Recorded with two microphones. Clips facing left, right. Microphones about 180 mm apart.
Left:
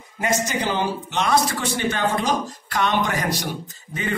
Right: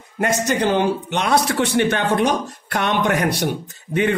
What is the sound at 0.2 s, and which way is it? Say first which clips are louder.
A man's voice: right 4 dB; 65° right (ahead or behind).